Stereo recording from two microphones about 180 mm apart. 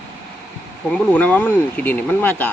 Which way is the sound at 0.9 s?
5° left (ahead or behind).